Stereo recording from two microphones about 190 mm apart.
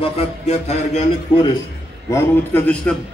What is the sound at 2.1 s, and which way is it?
Speech, 10° left (ahead or behind).